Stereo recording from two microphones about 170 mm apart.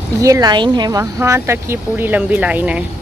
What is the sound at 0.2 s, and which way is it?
Speech, 20° right (ahead or behind).